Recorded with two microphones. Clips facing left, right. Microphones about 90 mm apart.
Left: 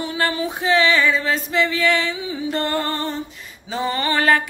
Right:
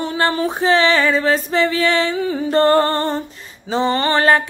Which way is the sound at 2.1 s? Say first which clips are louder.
Right 8 dB; 50° right (ahead or behind).